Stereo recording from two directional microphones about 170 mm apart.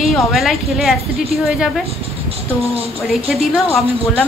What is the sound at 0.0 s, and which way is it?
Speech, centre (ahead or behind).